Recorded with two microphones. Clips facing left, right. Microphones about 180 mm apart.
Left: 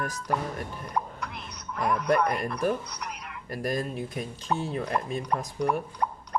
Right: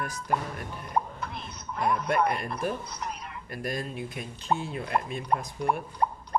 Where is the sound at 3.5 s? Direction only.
45° left (ahead or behind).